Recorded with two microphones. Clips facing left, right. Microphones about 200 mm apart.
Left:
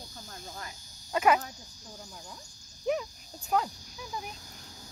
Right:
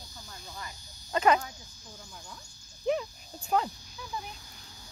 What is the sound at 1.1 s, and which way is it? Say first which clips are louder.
Speech: even; 10° left (ahead or behind).